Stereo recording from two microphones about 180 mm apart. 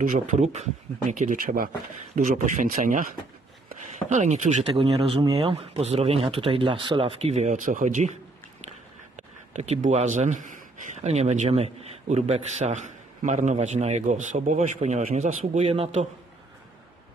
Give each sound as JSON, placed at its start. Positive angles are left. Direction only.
{"t": 0.0, "sound": "a man's voice", "side_deg": -45}
{"t": 9.5, "sound": "a man's voice", "side_deg": -40}